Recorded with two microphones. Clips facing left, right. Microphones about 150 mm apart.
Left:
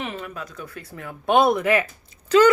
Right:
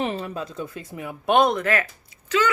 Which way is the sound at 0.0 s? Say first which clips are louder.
Right 5 dB; 35° right (ahead or behind).